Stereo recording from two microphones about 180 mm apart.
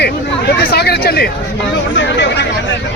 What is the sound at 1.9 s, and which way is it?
Speech, 75° left (ahead or behind).